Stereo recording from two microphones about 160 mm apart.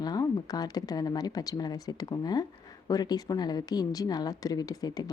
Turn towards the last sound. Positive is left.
turn(degrees=25)  # may be behind; listen again after turning